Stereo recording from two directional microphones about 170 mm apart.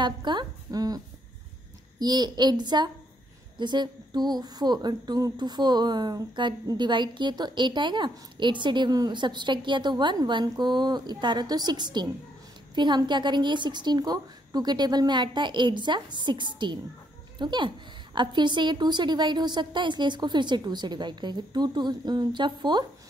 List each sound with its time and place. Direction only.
0.0 s speech: 25° right (ahead or behind)